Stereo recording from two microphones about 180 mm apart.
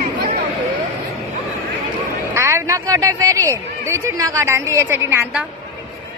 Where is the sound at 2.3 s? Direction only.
15° right (ahead or behind).